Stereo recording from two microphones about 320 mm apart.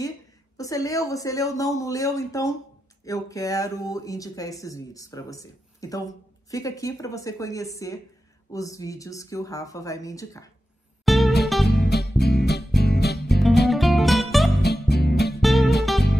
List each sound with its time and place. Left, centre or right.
0.6 s speech: centre
11.1 s music: centre
11.7 s music: left
13.7 s music: centre
14.6 s music: left
15.4 s music: centre